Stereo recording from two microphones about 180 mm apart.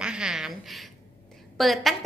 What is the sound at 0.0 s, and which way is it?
A woman's voice, 5° right (ahead or behind).